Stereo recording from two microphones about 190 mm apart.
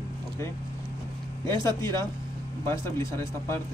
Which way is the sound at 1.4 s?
15° left (ahead or behind).